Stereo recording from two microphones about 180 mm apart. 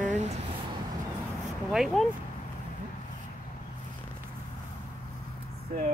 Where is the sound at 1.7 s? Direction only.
Centre (ahead or behind).